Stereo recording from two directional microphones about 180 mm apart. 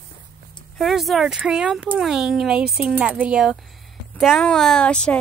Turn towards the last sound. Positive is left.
turn(degrees=5)  # may be behind; listen again after turning